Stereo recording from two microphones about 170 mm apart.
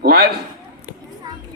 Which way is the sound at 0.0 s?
65° right (ahead or behind).